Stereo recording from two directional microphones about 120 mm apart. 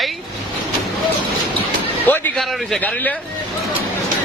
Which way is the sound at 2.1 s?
15° left (ahead or behind).